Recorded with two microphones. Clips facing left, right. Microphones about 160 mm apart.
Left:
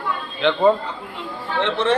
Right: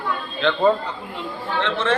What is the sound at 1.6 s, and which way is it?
Speech, 15° left (ahead or behind).